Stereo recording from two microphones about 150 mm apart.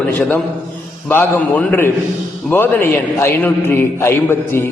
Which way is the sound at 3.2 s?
15° left (ahead or behind).